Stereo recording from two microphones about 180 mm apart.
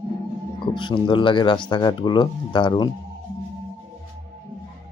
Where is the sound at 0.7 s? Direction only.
25° left (ahead or behind).